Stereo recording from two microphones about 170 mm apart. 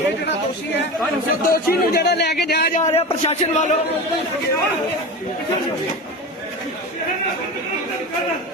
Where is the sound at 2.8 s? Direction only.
40° left (ahead or behind).